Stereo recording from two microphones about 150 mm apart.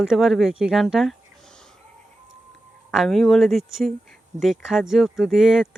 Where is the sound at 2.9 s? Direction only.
Centre (ahead or behind).